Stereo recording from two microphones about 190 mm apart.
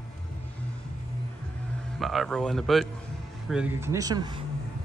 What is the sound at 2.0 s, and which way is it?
A man's voice, centre (ahead or behind).